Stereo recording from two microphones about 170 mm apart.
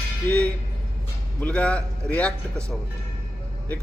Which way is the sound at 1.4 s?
5° left (ahead or behind).